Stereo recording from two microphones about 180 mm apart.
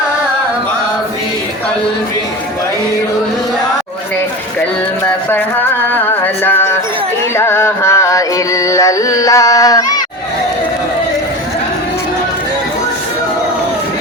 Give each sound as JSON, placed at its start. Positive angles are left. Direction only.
{"t": 5.9, "sound": "music", "side_deg": 10}